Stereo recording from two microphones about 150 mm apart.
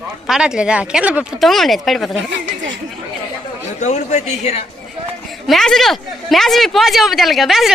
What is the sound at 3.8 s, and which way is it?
Speech, 50° left (ahead or behind).